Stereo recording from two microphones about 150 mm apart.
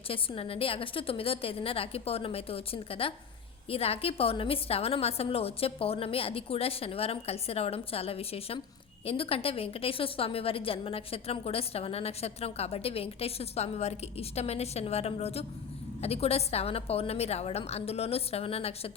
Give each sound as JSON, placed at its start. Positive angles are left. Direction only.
{"t": 0.1, "sound": "a woman's voice", "side_deg": 40}